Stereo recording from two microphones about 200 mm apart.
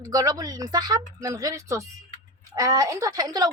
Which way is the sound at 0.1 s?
20° right (ahead or behind).